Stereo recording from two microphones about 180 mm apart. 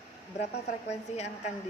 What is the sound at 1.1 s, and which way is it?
Speech, 40° left (ahead or behind).